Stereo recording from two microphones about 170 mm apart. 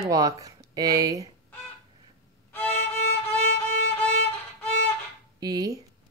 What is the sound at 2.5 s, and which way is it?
Violin, 10° left (ahead or behind).